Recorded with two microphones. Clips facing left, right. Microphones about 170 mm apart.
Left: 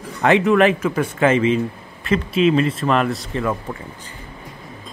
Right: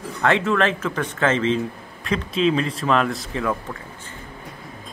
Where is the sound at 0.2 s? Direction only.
15° left (ahead or behind); by 3.5 s centre (ahead or behind).